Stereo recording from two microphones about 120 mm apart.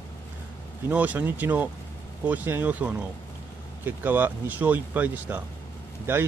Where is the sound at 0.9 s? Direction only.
10° right (ahead or behind).